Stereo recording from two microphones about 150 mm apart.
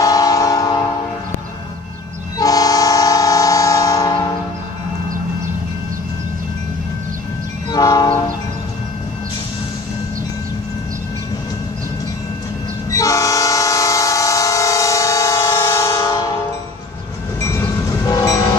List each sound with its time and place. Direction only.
0.0 s train: 25° left (ahead or behind)
2.3 s train: 25° left (ahead or behind)
7.7 s train: 25° left (ahead or behind)
12.9 s train: 20° left (ahead or behind)
17.4 s train: 20° left (ahead or behind)